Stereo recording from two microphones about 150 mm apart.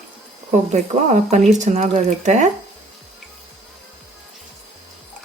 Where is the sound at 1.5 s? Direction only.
55° right (ahead or behind).